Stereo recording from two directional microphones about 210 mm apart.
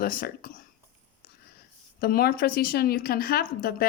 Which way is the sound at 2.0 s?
45° left (ahead or behind).